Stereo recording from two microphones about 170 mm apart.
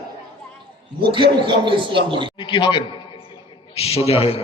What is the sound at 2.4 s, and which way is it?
A man's voice, 30° left (ahead or behind).